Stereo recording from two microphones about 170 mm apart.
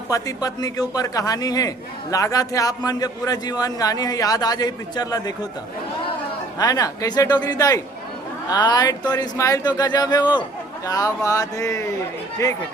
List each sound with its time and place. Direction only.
0.1 s a man's voice: 20° left (ahead or behind)
6.6 s a man's voice: 20° left (ahead or behind)